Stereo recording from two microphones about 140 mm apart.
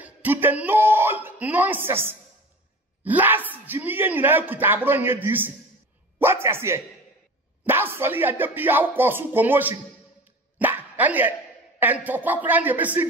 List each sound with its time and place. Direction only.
0.0 s speech: 15° right (ahead or behind)
10.6 s dog: 10° right (ahead or behind)
11.8 s speech: 10° right (ahead or behind)